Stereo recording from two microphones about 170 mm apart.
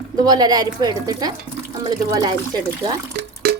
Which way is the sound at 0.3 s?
25° right (ahead or behind).